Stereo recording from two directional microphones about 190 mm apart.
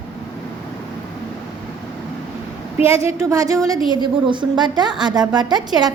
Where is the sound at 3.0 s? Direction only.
15° right (ahead or behind).